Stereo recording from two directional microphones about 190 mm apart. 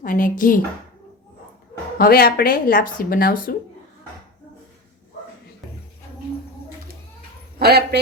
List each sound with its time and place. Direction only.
0.0 s speech: 45° left (ahead or behind)
2.0 s speech: 50° left (ahead or behind)
7.6 s a man's voice: 55° right (ahead or behind)